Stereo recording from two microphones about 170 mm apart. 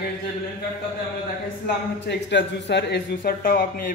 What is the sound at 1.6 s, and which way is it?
Speech, 90° left.